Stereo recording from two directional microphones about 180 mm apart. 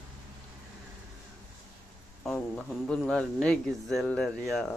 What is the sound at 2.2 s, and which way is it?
Speech, centre (ahead or behind).